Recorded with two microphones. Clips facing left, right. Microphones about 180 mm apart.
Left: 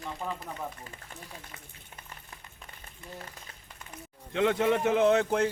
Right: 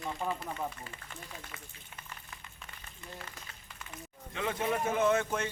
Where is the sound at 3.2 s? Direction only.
30° left (ahead or behind).